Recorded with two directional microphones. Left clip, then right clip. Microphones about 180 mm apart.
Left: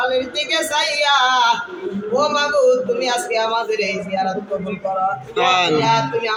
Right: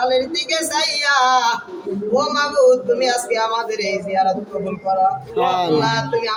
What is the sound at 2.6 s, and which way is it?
Speech, 5° right (ahead or behind).